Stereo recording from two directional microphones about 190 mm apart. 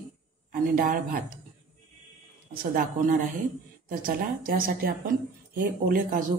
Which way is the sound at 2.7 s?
45° right (ahead or behind).